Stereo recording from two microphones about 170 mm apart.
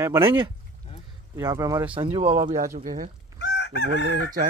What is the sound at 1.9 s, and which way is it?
Speech, 30° right (ahead or behind).